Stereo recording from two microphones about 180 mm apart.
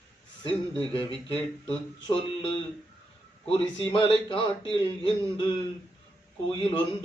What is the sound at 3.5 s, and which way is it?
Speech, 30° left (ahead or behind).